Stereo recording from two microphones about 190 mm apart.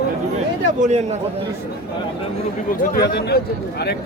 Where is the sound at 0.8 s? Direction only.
35° right (ahead or behind).